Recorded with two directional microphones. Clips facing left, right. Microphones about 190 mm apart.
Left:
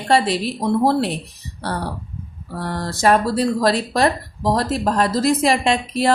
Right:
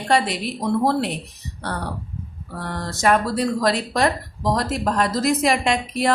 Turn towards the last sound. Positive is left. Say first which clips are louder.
# left 2 dB
turn(degrees=30)  # may be behind; listen again after turning